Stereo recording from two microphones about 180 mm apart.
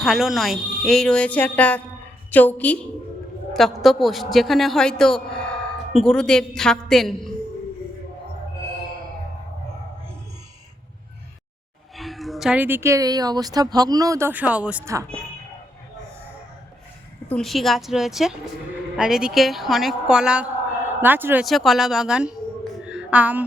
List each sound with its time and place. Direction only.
0.0 s a woman's voice: centre (ahead or behind)
11.9 s a woman's voice: centre (ahead or behind)
17.2 s a woman's voice: 5° left (ahead or behind)
21.4 s a woman's voice: centre (ahead or behind)
22.9 s music: 5° right (ahead or behind)